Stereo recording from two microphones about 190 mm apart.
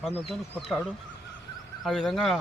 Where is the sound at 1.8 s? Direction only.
Centre (ahead or behind).